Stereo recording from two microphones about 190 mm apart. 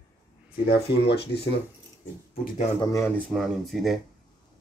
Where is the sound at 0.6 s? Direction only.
60° left (ahead or behind).